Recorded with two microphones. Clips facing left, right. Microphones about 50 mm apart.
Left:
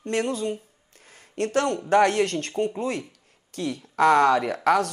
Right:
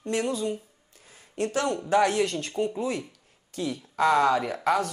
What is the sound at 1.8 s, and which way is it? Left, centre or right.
Speech, left.